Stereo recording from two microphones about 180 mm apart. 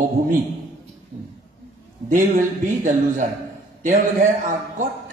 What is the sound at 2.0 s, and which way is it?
A man's voice, 45° right (ahead or behind).